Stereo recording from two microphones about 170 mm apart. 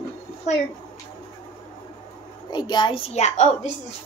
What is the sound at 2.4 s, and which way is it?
Speech, 25° left (ahead or behind).